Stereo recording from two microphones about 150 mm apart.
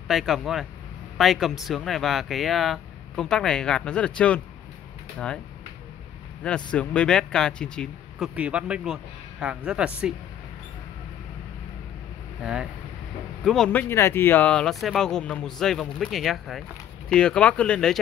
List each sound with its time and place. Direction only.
0.1 s speech: centre (ahead or behind)
6.4 s speech: 5° left (ahead or behind)
8.4 s speech: 10° right (ahead or behind)
13.4 s speech: 5° left (ahead or behind)